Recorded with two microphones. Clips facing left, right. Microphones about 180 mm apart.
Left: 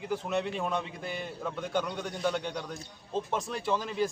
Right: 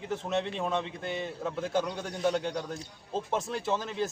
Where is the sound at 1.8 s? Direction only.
25° right (ahead or behind).